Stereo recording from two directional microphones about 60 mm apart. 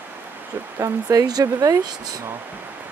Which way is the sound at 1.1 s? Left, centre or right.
Right.